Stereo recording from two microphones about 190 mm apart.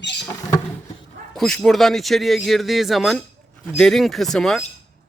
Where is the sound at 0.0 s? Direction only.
65° left (ahead or behind).